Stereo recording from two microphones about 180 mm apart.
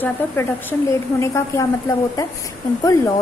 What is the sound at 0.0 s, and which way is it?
A woman's voice, 10° left (ahead or behind).